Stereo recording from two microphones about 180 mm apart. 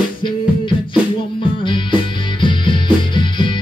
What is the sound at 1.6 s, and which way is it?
Music, 25° left (ahead or behind).